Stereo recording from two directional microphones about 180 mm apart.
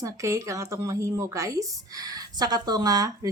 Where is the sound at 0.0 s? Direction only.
15° right (ahead or behind).